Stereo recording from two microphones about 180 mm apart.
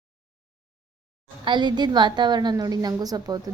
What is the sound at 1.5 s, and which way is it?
A woman's voice, 25° right (ahead or behind).